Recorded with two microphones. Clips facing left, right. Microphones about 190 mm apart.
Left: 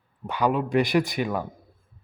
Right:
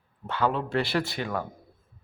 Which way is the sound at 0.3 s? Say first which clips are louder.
Left 3 dB; 15° left (ahead or behind).